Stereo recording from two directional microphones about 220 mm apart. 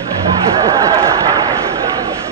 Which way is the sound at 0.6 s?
15° right (ahead or behind).